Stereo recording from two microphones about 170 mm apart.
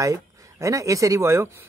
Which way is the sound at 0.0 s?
20° right (ahead or behind).